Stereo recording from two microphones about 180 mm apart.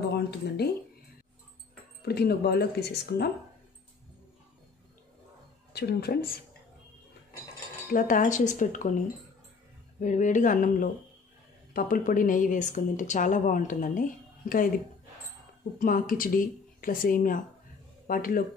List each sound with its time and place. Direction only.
0.1 s a sound: 65° left (ahead or behind)
2.0 s speech: 60° left (ahead or behind)
5.7 s speech: 65° left (ahead or behind)
7.9 s a woman's voice: 50° left (ahead or behind)
9.9 s a woman's voice: 45° left (ahead or behind)
15.8 s a woman's voice: 50° left (ahead or behind)